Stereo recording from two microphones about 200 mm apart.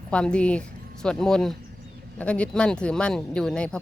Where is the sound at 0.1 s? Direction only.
5° left (ahead or behind).